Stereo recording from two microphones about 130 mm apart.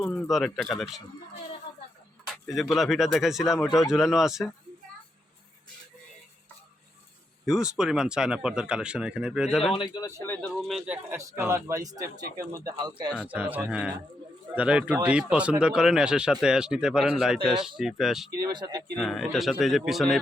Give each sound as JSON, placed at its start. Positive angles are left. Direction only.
{"t": 0.0, "sound": "speech", "side_deg": 5}
{"t": 1.7, "sound": "a sound", "side_deg": 35}
{"t": 2.2, "sound": "speech", "side_deg": 0}
{"t": 7.4, "sound": "speech", "side_deg": -5}
{"t": 9.7, "sound": "speech", "side_deg": 30}
{"t": 10.4, "sound": "speech", "side_deg": 0}
{"t": 11.2, "sound": "speech", "side_deg": -25}
{"t": 13.2, "sound": "speech", "side_deg": -10}
{"t": 18.4, "sound": "speech", "side_deg": -30}
{"t": 18.9, "sound": "speech", "side_deg": 0}